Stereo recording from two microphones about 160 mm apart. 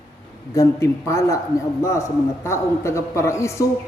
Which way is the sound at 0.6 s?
20° left (ahead or behind).